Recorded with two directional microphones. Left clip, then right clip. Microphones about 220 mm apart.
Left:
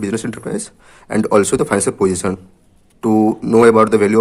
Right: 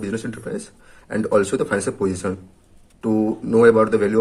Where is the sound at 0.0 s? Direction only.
40° left (ahead or behind).